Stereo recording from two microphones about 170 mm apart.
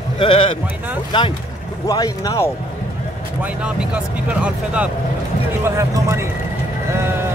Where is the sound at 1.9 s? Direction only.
20° left (ahead or behind).